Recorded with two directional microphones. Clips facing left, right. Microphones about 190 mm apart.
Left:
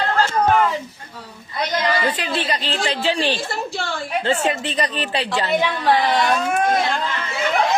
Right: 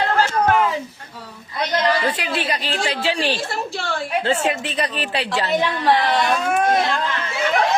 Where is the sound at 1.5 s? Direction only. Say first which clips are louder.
Right 1 dB; centre (ahead or behind).